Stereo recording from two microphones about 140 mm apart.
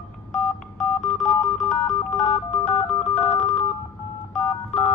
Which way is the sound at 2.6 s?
50° left (ahead or behind).